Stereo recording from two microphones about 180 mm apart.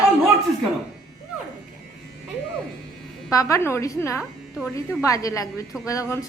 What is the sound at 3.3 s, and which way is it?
A woman's voice, 20° left (ahead or behind).